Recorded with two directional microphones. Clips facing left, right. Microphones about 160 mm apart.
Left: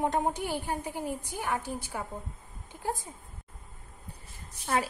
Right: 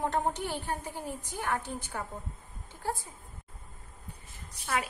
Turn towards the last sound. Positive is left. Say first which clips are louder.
# left 3 dB
turn(degrees=35)  # may be behind; listen again after turning